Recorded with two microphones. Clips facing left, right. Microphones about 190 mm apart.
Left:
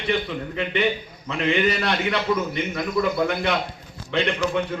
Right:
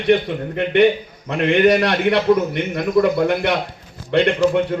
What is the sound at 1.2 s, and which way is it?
A man's voice, 60° right (ahead or behind).